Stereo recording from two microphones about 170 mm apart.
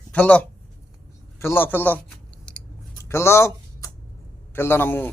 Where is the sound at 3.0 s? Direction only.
15° left (ahead or behind).